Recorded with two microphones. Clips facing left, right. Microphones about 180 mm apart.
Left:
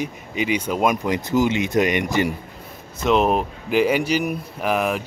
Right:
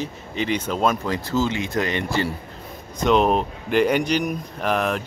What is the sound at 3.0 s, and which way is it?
Speech, 5° left (ahead or behind).